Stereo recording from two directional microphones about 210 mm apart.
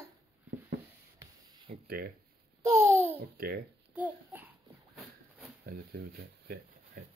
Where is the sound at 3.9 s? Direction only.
10° right (ahead or behind).